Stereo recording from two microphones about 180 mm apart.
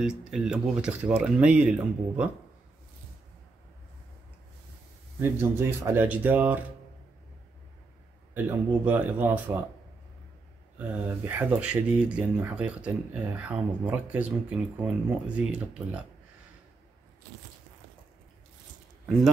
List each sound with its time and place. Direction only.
0.0 s speech: 5° right (ahead or behind)
5.2 s speech: 15° right (ahead or behind)
8.5 s speech: 10° right (ahead or behind)
10.8 s speech: 10° right (ahead or behind)